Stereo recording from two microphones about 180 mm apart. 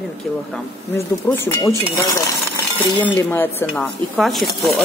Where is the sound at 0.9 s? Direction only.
10° left (ahead or behind).